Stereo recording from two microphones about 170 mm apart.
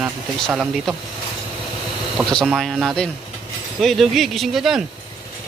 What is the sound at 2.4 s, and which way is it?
Speech, centre (ahead or behind).